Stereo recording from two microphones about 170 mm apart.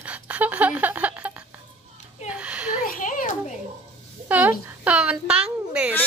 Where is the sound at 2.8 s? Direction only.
55° left (ahead or behind).